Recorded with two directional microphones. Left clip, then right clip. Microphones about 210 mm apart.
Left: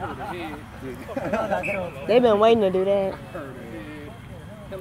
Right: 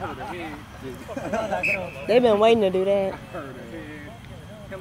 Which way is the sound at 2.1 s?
Centre (ahead or behind).